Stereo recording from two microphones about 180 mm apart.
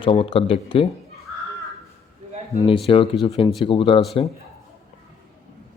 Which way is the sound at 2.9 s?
30° left (ahead or behind).